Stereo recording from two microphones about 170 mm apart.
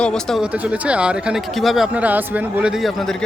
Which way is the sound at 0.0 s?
5° left (ahead or behind).